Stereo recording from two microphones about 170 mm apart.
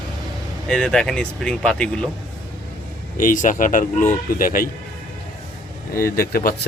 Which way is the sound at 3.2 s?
50° left (ahead or behind).